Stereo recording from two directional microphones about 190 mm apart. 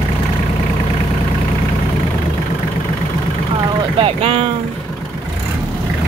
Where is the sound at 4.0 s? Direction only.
30° right (ahead or behind).